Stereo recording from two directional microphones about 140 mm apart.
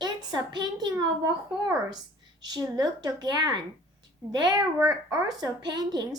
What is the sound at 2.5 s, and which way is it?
A child's voice, 30° right (ahead or behind).